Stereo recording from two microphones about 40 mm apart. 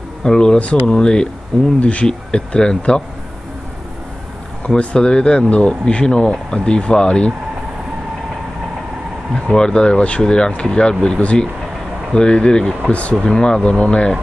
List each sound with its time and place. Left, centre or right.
0.2 s speech: centre
1.8 s speech: left
4.6 s speech: left
9.3 s speech: centre
12.8 s speech: left
13.2 s speech: left